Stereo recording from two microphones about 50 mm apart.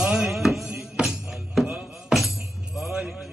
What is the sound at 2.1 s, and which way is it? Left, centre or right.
Music, centre.